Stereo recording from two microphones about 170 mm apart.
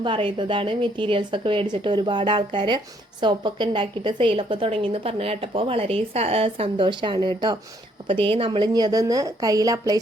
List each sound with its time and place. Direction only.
0.0 s a woman's voice: 30° right (ahead or behind)